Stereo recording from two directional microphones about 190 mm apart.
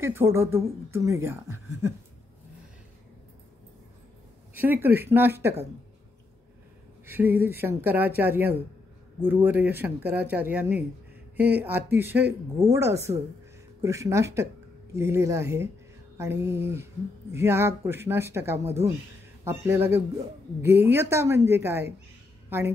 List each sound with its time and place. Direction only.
0.0 s a woman's voice: 15° right (ahead or behind)
4.6 s a woman's voice: 10° right (ahead or behind)
7.1 s a woman's voice: 10° right (ahead or behind)